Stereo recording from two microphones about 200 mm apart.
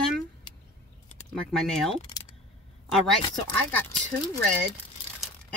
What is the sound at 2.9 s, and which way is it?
Speech, centre (ahead or behind).